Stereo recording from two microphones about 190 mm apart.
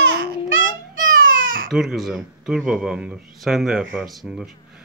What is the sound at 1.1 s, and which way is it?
Baby cry, 45° right (ahead or behind).